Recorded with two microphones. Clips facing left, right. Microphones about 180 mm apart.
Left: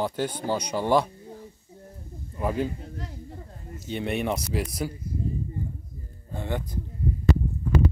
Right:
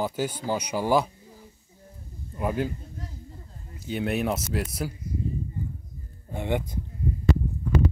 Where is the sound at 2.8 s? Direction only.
85° left.